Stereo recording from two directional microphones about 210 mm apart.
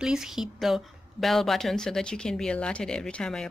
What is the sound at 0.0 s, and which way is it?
A woman's voice, 5° right (ahead or behind).